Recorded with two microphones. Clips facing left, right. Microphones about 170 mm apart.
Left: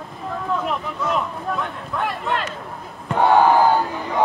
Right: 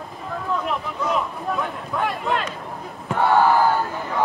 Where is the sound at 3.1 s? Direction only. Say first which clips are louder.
Left 2 dB; 15° left (ahead or behind).